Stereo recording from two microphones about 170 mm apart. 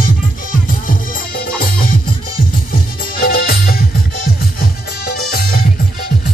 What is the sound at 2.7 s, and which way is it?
Music, 60° left (ahead or behind).